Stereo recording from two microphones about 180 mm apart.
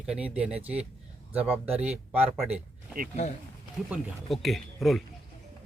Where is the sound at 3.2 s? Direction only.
40° left (ahead or behind).